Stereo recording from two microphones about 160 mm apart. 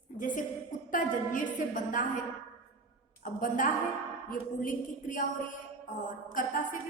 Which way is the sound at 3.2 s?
55° left (ahead or behind).